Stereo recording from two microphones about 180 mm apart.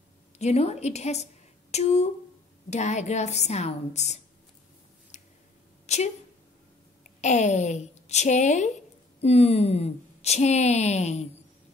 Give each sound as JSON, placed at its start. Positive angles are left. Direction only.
{"t": 0.4, "sound": "a woman's voice", "side_deg": 35}
{"t": 5.1, "sound": "a sound", "side_deg": 40}
{"t": 5.9, "sound": "a woman's voice", "side_deg": 40}
{"t": 7.2, "sound": "a woman's voice", "side_deg": 40}